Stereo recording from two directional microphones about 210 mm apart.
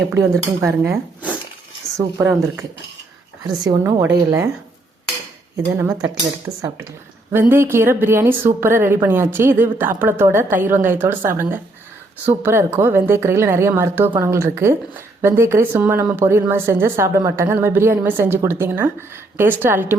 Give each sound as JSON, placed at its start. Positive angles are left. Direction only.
{"t": 0.1, "sound": "speech", "side_deg": -10}
{"t": 5.7, "sound": "speech", "side_deg": -15}